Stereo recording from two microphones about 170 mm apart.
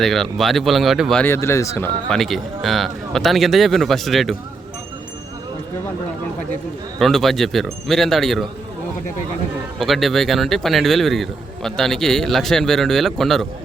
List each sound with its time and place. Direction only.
0.0 s speech: centre (ahead or behind)
1.2 s speech: 15° left (ahead or behind)
2.0 s speech: centre (ahead or behind)
7.0 s speech: centre (ahead or behind)
9.7 s speech: centre (ahead or behind)